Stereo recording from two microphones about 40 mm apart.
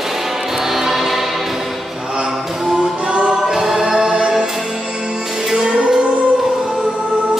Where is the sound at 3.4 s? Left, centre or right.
Centre.